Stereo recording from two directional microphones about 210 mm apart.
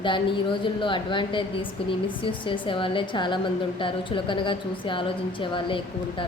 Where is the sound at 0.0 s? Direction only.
25° left (ahead or behind).